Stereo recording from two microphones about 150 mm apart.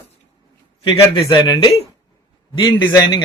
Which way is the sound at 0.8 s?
35° left (ahead or behind).